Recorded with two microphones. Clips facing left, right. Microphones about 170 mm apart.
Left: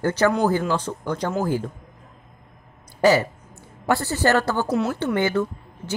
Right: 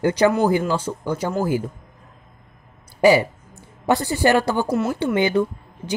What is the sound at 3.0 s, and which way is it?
Speech, 10° right (ahead or behind).